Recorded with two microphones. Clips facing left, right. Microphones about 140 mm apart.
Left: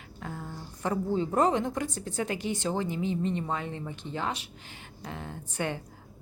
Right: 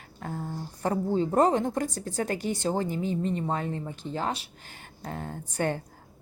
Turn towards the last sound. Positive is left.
turn(degrees=-45)  # may be behind; listen again after turning